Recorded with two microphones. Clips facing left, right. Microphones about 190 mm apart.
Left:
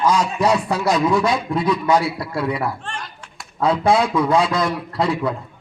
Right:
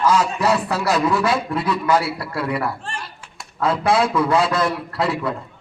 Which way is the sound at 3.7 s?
5° right (ahead or behind).